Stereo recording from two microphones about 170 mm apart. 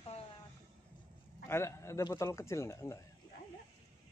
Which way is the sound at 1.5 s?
15° left (ahead or behind).